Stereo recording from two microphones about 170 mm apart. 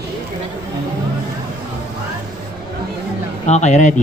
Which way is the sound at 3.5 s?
40° left (ahead or behind).